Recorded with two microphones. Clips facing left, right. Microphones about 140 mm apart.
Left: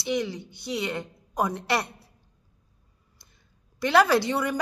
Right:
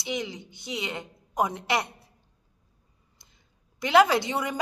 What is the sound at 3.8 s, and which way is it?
Speech, 20° right (ahead or behind).